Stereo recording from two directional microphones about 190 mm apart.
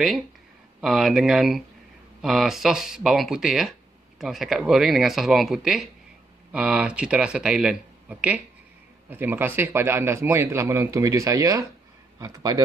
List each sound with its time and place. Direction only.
0.7 s a man's voice: centre (ahead or behind); by 12.6 s 20° right (ahead or behind)